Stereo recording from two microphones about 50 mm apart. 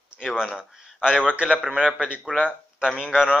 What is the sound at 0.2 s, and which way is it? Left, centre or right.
Speech, centre.